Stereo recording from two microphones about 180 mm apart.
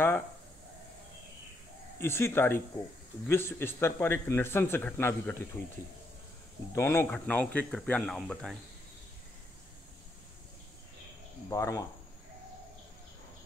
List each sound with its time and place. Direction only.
2.0 s a man's voice: 15° left (ahead or behind)
6.7 s a man's voice: 15° left (ahead or behind)
11.5 s speech: 20° left (ahead or behind)